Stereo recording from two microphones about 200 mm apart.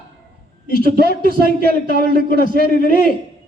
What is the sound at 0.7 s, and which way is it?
Speech, 45° left (ahead or behind).